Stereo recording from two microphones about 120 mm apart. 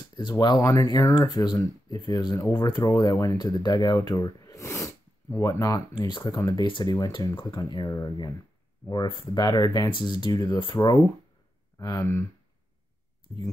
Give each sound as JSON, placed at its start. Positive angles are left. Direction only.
{"t": 0.1, "sound": "speech", "side_deg": 35}
{"t": 5.9, "sound": "speech", "side_deg": 40}
{"t": 11.8, "sound": "speech", "side_deg": 25}
{"t": 13.3, "sound": "speech", "side_deg": 30}